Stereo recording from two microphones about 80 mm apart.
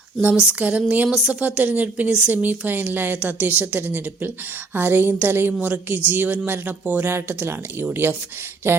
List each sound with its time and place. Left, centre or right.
0.2 s a woman's voice: centre